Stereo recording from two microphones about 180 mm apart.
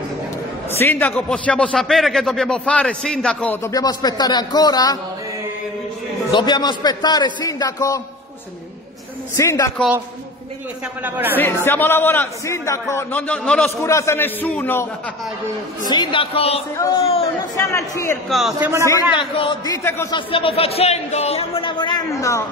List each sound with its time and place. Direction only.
0.7 s a man's voice: 10° left (ahead or behind)
3.7 s a man's voice: 20° left (ahead or behind)
6.3 s a man's voice: 25° left (ahead or behind)
9.4 s a man's voice: 15° left (ahead or behind)
11.1 s speech: 10° right (ahead or behind)
11.3 s a man's voice: 10° left (ahead or behind)
13.7 s a man's voice: 15° left (ahead or behind)
15.9 s a man's voice: 25° left (ahead or behind)
16.7 s a man's voice: 20° left (ahead or behind)
17.0 s speech: 35° left (ahead or behind)
17.6 s a man's voice: 15° left (ahead or behind)
18.3 s a man's voice: centre (ahead or behind)
18.9 s a man's voice: 20° left (ahead or behind)
20.2 s a man's voice: 30° left (ahead or behind)